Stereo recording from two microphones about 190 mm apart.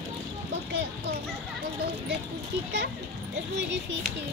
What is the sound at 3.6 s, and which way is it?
Speech, 70° right (ahead or behind).